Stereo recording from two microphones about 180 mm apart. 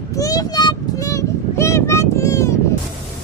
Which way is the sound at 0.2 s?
20° left (ahead or behind).